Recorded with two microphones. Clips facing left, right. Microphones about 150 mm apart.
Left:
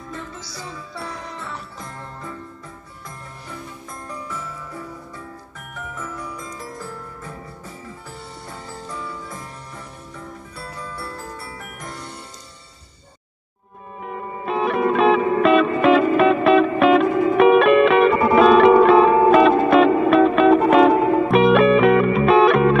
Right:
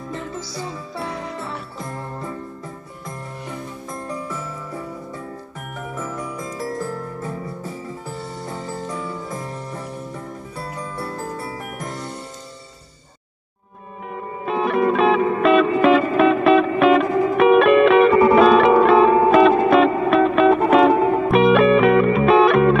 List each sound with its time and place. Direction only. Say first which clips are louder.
10.6 s music: right 4 dB; 40° right (ahead or behind)
14.0 s music: even; centre (ahead or behind)